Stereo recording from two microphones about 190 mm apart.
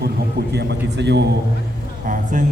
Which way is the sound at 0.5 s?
60° right (ahead or behind).